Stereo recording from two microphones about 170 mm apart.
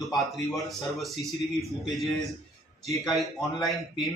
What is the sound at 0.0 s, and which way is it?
A man's voice, centre (ahead or behind).